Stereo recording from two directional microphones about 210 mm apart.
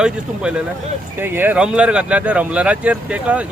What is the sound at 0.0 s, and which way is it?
Speech, 5° right (ahead or behind).